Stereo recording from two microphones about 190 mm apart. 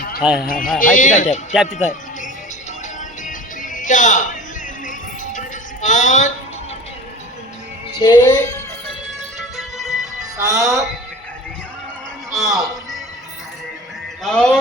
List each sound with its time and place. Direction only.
0.2 s speech: 5° right (ahead or behind)
0.4 s a man's voice: 50° left (ahead or behind)
3.2 s music: 45° left (ahead or behind)
5.8 s a sound: 40° left (ahead or behind)
7.9 s music: 20° left (ahead or behind)
9.4 s music: centre (ahead or behind)
12.4 s a man's voice: centre (ahead or behind)
14.3 s speech: 5° left (ahead or behind)